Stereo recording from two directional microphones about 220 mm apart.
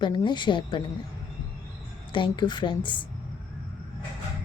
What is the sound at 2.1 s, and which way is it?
Speech, 20° left (ahead or behind).